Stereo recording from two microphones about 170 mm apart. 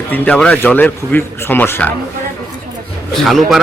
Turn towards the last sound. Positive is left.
turn(degrees=0)  # may be behind; listen again after turning